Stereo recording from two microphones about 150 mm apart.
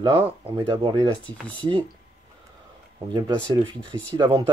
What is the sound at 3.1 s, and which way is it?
Speech, 30° right (ahead or behind).